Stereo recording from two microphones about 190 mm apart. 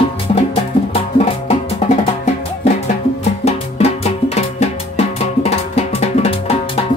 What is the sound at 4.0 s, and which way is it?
Music, 35° left (ahead or behind).